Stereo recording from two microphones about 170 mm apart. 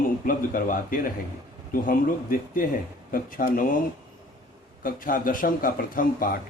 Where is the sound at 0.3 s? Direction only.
55° left (ahead or behind).